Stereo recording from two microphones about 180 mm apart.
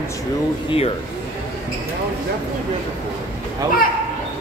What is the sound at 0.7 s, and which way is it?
Speech, 35° left (ahead or behind).